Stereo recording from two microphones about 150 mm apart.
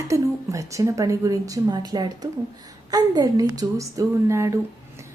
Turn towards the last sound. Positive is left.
turn(degrees=-20)  # may be behind; listen again after turning